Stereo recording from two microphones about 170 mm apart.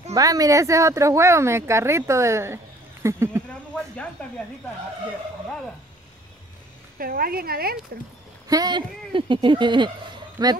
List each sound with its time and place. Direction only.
0.1 s speech: 20° right (ahead or behind)
3.7 s speech: 5° left (ahead or behind)
7.0 s speech: 60° right (ahead or behind)
8.5 s speech: 25° right (ahead or behind)